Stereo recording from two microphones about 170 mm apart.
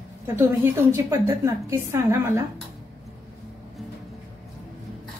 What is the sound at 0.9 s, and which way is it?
A woman's voice, 15° right (ahead or behind).